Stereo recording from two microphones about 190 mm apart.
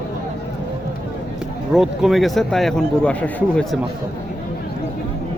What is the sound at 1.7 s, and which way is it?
Speech, centre (ahead or behind).